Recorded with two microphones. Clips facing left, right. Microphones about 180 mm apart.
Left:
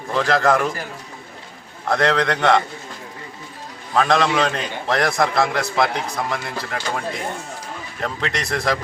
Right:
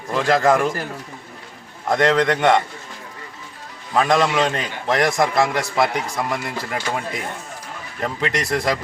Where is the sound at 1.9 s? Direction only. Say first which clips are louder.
Right 2 dB; 15° right (ahead or behind).